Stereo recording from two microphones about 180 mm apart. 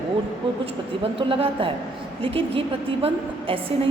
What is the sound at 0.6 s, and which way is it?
A woman's voice, 30° right (ahead or behind).